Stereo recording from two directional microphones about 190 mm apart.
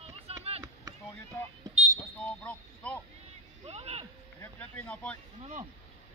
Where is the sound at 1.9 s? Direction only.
5° left (ahead or behind).